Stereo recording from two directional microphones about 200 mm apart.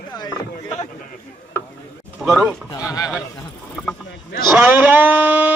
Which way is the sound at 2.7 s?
20° left (ahead or behind).